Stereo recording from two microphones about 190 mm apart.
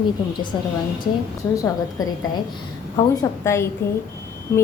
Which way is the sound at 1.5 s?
15° left (ahead or behind).